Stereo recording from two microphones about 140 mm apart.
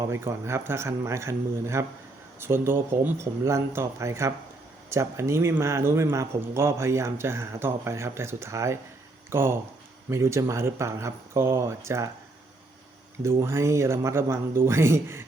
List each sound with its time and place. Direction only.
0.1 s speech: 20° right (ahead or behind)
13.4 s speech: 20° right (ahead or behind)